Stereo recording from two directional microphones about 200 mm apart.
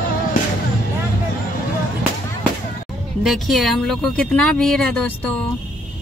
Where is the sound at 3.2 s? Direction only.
Centre (ahead or behind).